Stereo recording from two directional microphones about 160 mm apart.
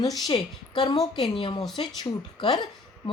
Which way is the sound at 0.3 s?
30° left (ahead or behind).